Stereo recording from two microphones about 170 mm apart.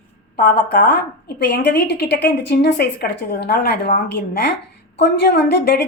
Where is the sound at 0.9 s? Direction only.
70° left (ahead or behind).